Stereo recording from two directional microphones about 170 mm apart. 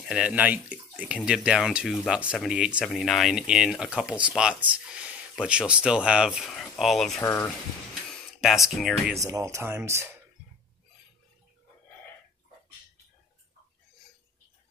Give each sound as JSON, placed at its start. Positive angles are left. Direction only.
{"t": 0.0, "sound": "speech", "side_deg": -5}
{"t": 7.2, "sound": "speech", "side_deg": 15}
{"t": 8.1, "sound": "speech", "side_deg": 0}
{"t": 9.1, "sound": "speech", "side_deg": -20}